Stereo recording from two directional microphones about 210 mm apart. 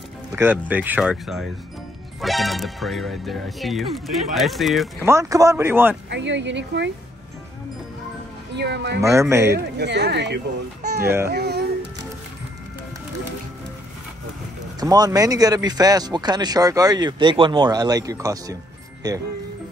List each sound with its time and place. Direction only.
0.4 s speech: 10° right (ahead or behind)
5.0 s speech: 15° right (ahead or behind)
6.0 s speech: 55° right (ahead or behind)
8.5 s speech: 55° right (ahead or behind)
9.0 s speech: 15° right (ahead or behind)
9.5 s speech: 50° right (ahead or behind)
11.0 s speech: 10° right (ahead or behind)
11.2 s speech: 50° right (ahead or behind)
14.8 s speech: 20° right (ahead or behind)